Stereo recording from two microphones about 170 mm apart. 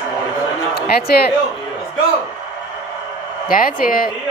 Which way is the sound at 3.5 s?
60° left (ahead or behind).